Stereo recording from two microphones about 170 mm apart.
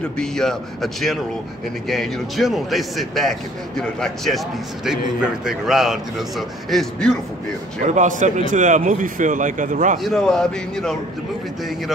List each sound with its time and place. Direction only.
0.2 s a man's voice: 5° left (ahead or behind)
7.8 s a man's voice: 45° right (ahead or behind)
10.0 s a man's voice: centre (ahead or behind)